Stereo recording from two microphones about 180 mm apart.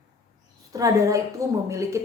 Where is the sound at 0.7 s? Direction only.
20° right (ahead or behind).